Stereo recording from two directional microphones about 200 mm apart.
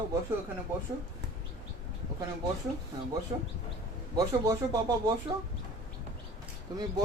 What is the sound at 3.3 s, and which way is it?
Speech, 25° right (ahead or behind).